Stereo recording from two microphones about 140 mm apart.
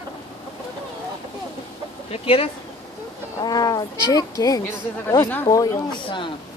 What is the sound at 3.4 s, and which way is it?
Speech, 25° left (ahead or behind).